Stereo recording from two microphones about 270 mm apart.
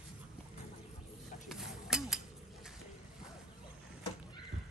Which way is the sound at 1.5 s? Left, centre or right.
Centre.